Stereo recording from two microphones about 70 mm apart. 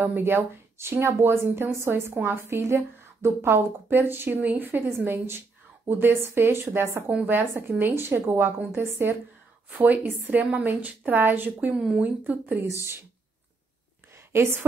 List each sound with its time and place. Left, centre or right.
0.0 s a woman's voice: right
9.7 s a woman's voice: right
14.3 s a woman's voice: right